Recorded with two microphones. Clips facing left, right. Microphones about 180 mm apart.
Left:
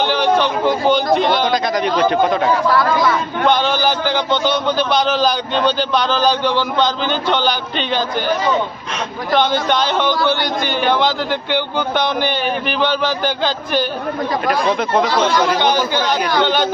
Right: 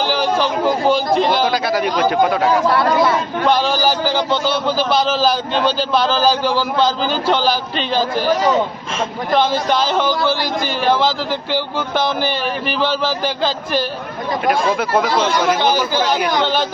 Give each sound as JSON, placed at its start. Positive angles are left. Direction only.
{"t": 0.0, "sound": "speech", "side_deg": -5}
{"t": 2.6, "sound": "speech", "side_deg": -30}
{"t": 3.5, "sound": "speech", "side_deg": -5}
{"t": 9.3, "sound": "speech", "side_deg": 0}